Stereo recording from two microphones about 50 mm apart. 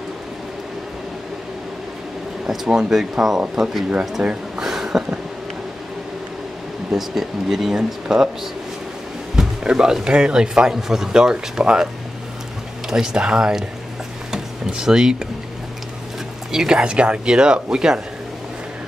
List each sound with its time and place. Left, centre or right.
2.4 s speech: centre
4.6 s a sound: centre
6.9 s speech: centre
9.3 s speech: centre
12.9 s speech: centre
16.5 s speech: centre